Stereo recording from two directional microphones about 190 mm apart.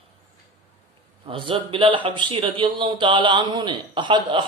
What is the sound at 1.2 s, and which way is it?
Speech, 25° right (ahead or behind).